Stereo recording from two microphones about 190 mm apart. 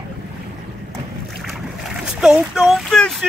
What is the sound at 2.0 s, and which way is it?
Speech, 5° right (ahead or behind).